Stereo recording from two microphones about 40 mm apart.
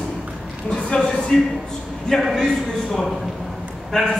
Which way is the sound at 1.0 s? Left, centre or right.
Centre.